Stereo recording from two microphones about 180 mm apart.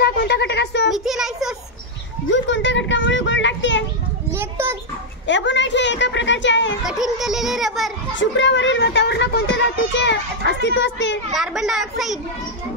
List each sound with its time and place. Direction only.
0.0 s speech: 65° left (ahead or behind)
0.8 s a child's voice: centre (ahead or behind)
2.3 s a child's voice: 90° left
4.3 s children playing: 15° right (ahead or behind)
5.2 s speech: 80° left
6.8 s a child's voice: centre (ahead or behind)
8.2 s speech: 90° left
11.3 s a child's voice: centre (ahead or behind)